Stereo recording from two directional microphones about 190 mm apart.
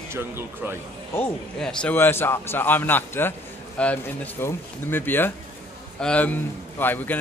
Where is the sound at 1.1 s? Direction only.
5° left (ahead or behind).